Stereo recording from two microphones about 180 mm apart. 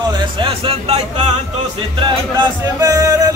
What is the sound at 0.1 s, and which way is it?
Speech, 25° right (ahead or behind).